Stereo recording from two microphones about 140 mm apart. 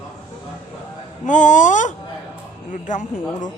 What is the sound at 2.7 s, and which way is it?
Speech, 65° left (ahead or behind).